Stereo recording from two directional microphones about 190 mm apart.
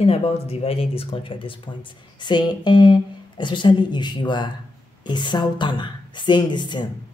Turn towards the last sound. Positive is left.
turn(degrees=25)  # may be behind; listen again after turning